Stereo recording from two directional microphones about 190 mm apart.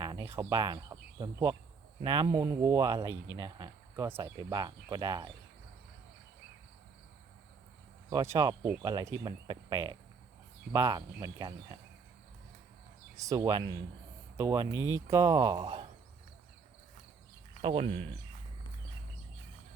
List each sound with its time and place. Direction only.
0.0 s speech: 20° right (ahead or behind)
8.1 s speech: 15° right (ahead or behind)
13.1 s speech: 20° right (ahead or behind)
17.6 s speech: 25° right (ahead or behind)